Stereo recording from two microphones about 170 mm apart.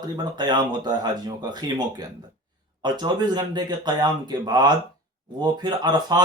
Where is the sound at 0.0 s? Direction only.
25° right (ahead or behind).